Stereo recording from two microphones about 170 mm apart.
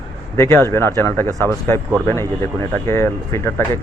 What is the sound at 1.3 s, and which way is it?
Speech, 20° right (ahead or behind).